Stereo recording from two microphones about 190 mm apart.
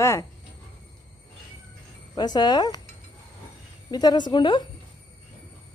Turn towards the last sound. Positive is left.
turn(degrees=25)  # may be behind; listen again after turning